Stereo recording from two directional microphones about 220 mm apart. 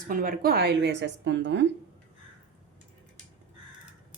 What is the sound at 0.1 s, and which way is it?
Speech, 40° right (ahead or behind).